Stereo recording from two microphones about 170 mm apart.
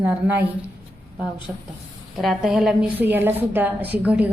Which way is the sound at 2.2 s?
Centre (ahead or behind).